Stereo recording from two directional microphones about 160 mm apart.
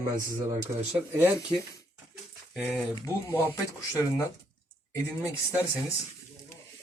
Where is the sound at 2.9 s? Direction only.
20° left (ahead or behind).